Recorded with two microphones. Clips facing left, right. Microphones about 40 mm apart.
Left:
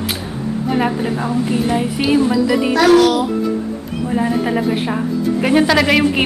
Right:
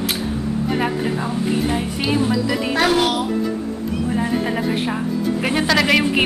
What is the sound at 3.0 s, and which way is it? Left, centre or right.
Speech, right.